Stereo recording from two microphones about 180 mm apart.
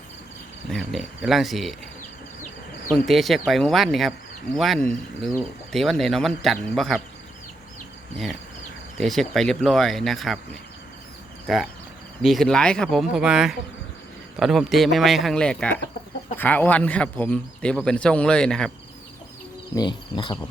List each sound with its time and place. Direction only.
0.7 s speech: centre (ahead or behind)
2.9 s speech: centre (ahead or behind)
9.0 s speech: centre (ahead or behind)
19.7 s speech: 25° left (ahead or behind)